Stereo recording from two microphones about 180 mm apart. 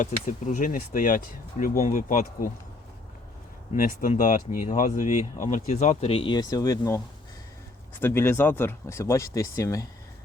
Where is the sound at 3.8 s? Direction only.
45° left (ahead or behind); by 7.0 s 20° left (ahead or behind).